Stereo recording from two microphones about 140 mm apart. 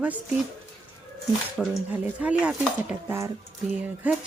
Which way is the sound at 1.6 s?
Centre (ahead or behind).